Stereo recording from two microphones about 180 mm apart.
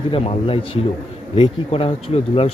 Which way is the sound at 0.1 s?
30° left (ahead or behind).